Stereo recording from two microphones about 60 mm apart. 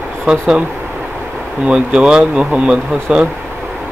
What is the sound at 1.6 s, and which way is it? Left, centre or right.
Speech, centre.